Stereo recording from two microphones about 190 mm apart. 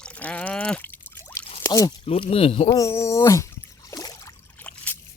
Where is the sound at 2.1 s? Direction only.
30° left (ahead or behind).